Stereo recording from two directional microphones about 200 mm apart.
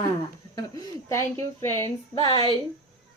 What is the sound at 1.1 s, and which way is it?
Speech, 15° left (ahead or behind).